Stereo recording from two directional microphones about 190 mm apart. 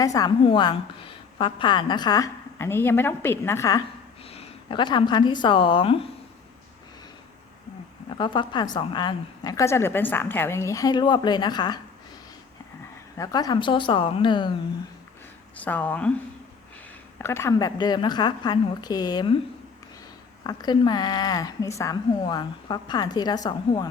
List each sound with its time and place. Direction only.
0.0 s a woman's voice: 20° left (ahead or behind)
4.3 s speech: 30° left (ahead or behind)
8.1 s a woman's voice: 25° left (ahead or behind)
13.1 s a woman's voice: 20° left (ahead or behind)
15.5 s speech: 10° left (ahead or behind)
17.2 s a woman's voice: 10° left (ahead or behind)
20.5 s a woman's voice: 20° left (ahead or behind)